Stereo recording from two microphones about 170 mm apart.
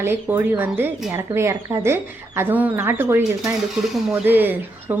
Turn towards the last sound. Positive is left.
turn(degrees=-10)  # may be behind; listen again after turning